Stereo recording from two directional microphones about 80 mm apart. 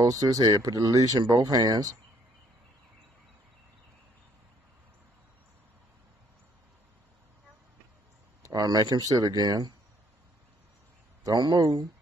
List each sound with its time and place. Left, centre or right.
0.0 s speech: right
8.5 s speech: right
11.2 s speech: right